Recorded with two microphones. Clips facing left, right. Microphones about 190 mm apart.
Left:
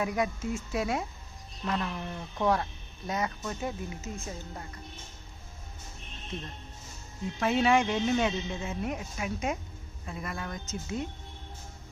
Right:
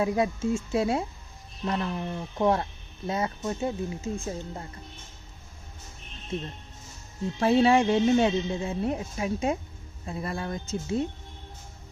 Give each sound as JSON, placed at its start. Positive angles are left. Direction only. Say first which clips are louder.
{"t": 0.0, "sound": "speech", "louder": "right 5 dB", "side_deg": -30}
{"t": 7.3, "sound": "speech", "louder": "right 4 dB", "side_deg": -30}